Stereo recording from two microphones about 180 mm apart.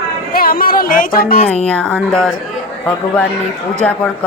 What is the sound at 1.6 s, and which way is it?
Speech, 5° left (ahead or behind).